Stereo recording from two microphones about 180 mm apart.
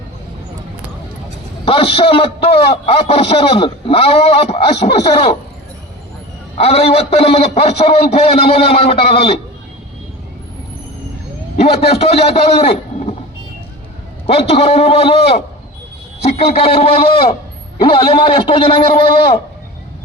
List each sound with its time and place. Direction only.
1.6 s a man's voice: 30° left (ahead or behind)
6.6 s a man's voice: 35° left (ahead or behind)
11.5 s a man's voice: 35° left (ahead or behind)
14.3 s a man's voice: 35° left (ahead or behind)